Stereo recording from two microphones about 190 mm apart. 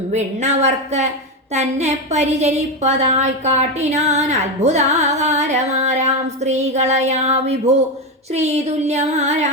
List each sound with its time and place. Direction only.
0.1 s a woman's voice: 35° right (ahead or behind)